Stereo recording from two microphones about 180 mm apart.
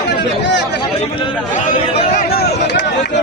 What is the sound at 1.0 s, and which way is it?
Speech, 30° left (ahead or behind).